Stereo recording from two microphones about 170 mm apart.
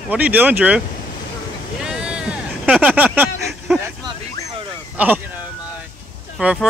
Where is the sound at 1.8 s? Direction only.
5° right (ahead or behind).